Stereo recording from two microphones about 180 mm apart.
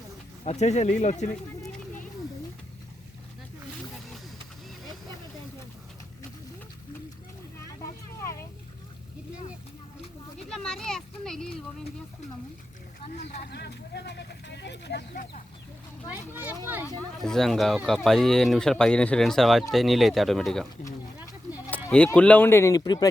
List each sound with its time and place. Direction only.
0.4 s speech: 40° left (ahead or behind)
10.3 s a sound: 5° left (ahead or behind)
13.5 s speech: 65° left (ahead or behind)
16.3 s speech: 10° right (ahead or behind)
17.2 s speech: centre (ahead or behind)
21.8 s speech: 5° left (ahead or behind); by 23.0 s 20° left (ahead or behind)